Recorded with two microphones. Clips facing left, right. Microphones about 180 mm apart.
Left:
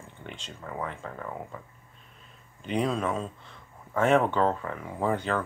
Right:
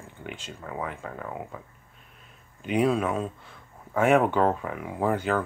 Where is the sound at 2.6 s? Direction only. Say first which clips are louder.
Right 4 dB; 5° right (ahead or behind).